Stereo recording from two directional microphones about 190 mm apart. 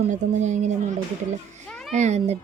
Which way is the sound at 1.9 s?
35° right (ahead or behind).